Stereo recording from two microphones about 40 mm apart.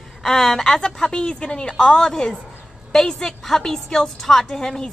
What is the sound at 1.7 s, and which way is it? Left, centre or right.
A woman's voice, centre.